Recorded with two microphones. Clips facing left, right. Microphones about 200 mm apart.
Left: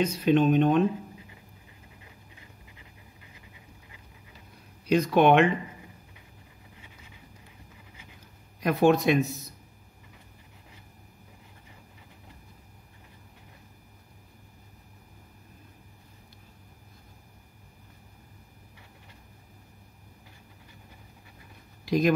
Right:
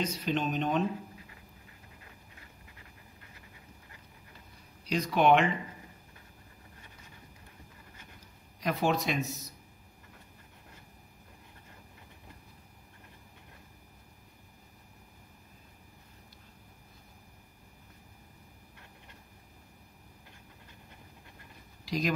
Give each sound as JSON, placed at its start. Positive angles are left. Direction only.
{"t": 0.0, "sound": "speech", "side_deg": 55}
{"t": 4.8, "sound": "speech", "side_deg": 55}
{"t": 8.5, "sound": "speech", "side_deg": 55}
{"t": 21.8, "sound": "speech", "side_deg": 55}